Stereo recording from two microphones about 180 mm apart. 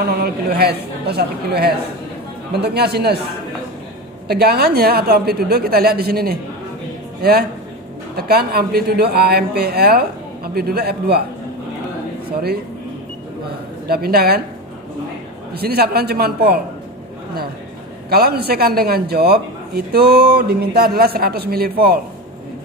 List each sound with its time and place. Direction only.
0.0 s a man's voice: 60° right (ahead or behind)
4.3 s a man's voice: 60° right (ahead or behind)
13.8 s a man's voice: 60° right (ahead or behind)
15.5 s a man's voice: 60° right (ahead or behind)
18.1 s a man's voice: 60° right (ahead or behind)